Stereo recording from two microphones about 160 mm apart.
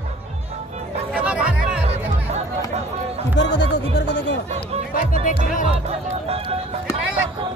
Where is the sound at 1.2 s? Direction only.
10° right (ahead or behind).